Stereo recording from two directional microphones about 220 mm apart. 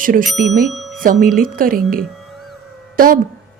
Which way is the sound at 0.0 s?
40° right (ahead or behind).